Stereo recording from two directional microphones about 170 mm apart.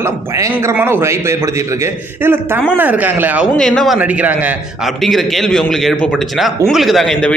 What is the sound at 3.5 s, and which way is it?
Speech, 5° left (ahead or behind).